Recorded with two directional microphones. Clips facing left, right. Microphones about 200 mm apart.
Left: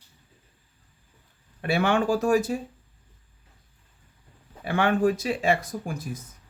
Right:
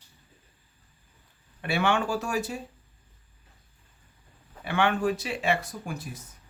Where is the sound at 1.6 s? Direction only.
45° left (ahead or behind).